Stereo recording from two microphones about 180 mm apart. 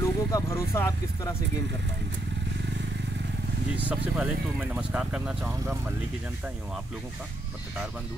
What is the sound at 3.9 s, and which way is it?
Speech, 5° right (ahead or behind).